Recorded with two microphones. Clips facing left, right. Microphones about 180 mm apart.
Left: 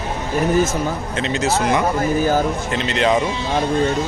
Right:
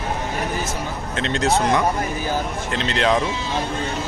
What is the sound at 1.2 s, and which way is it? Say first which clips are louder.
Speech: right 1 dB; 5° left (ahead or behind).